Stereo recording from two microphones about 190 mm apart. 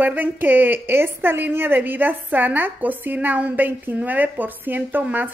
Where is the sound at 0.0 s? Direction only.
10° right (ahead or behind).